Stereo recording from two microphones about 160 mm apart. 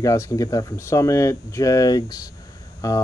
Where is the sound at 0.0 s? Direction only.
20° left (ahead or behind).